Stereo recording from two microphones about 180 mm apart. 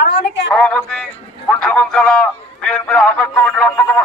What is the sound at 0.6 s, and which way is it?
A man's voice, 5° left (ahead or behind).